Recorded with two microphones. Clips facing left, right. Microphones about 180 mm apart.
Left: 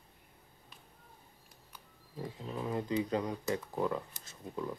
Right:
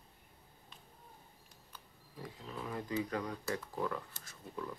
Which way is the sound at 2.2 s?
25° left (ahead or behind).